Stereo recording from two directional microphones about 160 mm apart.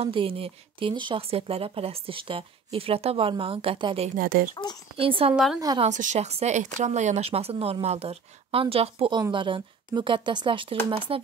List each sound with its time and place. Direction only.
0.0 s speech: 35° right (ahead or behind)
4.2 s speech: 65° right (ahead or behind)
4.9 s speech: 35° right (ahead or behind)
5.3 s a woman's voice: centre (ahead or behind)
5.8 s speech: 50° right (ahead or behind); by 11.2 s 35° right (ahead or behind)